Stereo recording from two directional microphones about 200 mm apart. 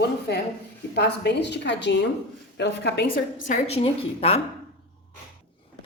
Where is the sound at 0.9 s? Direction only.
55° left (ahead or behind).